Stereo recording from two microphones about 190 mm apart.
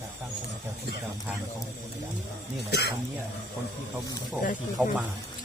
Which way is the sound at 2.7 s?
60° left (ahead or behind).